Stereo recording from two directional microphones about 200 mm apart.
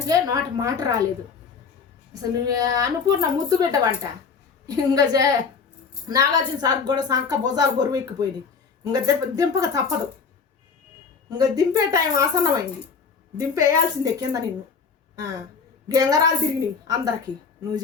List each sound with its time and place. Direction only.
0.1 s a woman's voice: 20° right (ahead or behind)
2.2 s a woman's voice: 20° right (ahead or behind)
11.3 s speech: 20° right (ahead or behind)
15.9 s a woman's voice: 20° right (ahead or behind)